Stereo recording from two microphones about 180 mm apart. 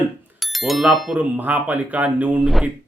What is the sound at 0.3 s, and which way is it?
Speech, centre (ahead or behind).